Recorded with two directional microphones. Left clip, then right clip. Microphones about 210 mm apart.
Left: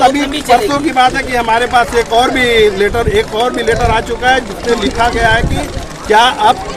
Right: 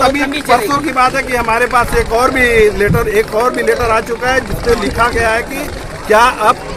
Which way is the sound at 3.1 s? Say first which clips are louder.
Even; 55° left (ahead or behind).